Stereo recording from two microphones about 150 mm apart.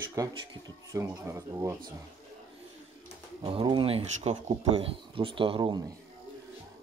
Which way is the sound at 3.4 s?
35° right (ahead or behind).